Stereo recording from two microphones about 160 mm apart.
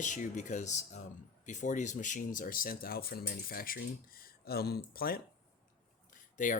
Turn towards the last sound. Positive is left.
turn(degrees=55)  # may be behind; listen again after turning